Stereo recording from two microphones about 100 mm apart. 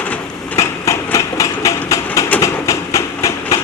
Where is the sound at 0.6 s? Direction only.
30° left (ahead or behind).